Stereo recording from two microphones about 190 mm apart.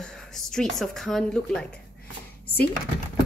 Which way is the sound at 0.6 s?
Centre (ahead or behind).